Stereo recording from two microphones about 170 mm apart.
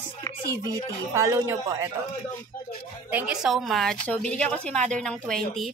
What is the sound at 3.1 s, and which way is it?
A woman's voice, 5° right (ahead or behind).